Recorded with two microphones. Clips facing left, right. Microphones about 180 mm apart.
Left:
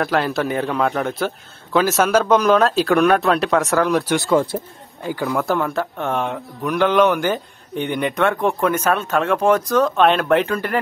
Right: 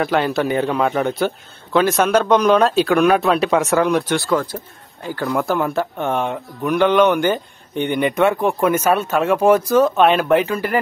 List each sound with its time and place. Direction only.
0.0 s speech: centre (ahead or behind)
4.3 s speech: 25° left (ahead or behind)
5.0 s a man's voice: 15° left (ahead or behind)
5.3 s speech: centre (ahead or behind)